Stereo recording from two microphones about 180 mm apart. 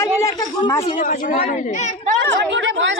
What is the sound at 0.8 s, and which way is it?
Speech, 30° left (ahead or behind).